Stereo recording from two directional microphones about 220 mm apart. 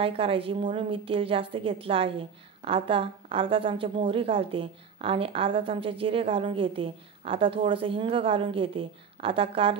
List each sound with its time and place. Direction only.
0.0 s a woman's voice: 25° right (ahead or behind)